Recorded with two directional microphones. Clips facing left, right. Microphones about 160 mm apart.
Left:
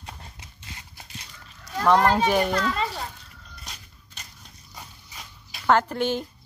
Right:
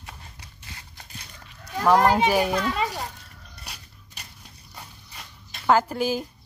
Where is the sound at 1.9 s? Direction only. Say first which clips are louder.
Right 1 dB; 10° right (ahead or behind).